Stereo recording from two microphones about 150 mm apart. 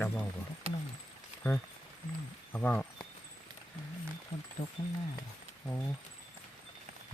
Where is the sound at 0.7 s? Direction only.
40° right (ahead or behind).